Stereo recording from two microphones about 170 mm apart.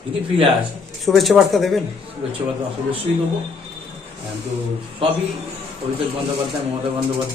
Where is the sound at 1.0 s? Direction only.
Centre (ahead or behind).